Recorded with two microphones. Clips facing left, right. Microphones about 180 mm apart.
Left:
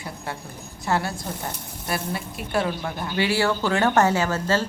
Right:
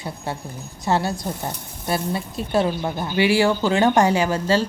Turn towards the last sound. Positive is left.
turn(degrees=-15)  # may be behind; listen again after turning